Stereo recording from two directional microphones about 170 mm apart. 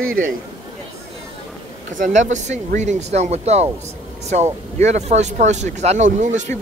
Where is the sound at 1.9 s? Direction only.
45° right (ahead or behind).